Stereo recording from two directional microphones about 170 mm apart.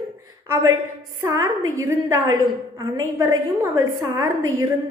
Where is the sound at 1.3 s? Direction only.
20° right (ahead or behind).